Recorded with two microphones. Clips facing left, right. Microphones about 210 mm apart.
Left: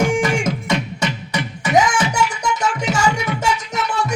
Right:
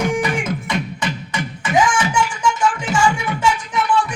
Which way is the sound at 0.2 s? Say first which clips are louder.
Left 2 dB; 45° left (ahead or behind).